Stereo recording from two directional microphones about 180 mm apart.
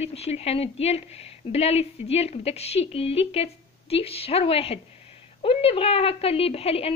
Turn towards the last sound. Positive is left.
turn(degrees=35)  # may be behind; listen again after turning